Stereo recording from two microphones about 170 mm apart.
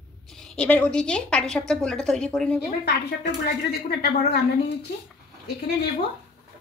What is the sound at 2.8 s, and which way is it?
Speech, 80° left.